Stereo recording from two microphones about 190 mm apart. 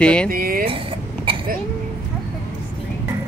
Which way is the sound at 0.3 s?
50° right (ahead or behind).